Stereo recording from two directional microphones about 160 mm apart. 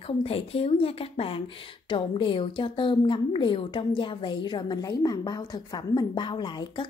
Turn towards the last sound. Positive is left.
turn(degrees=30)  # may be behind; listen again after turning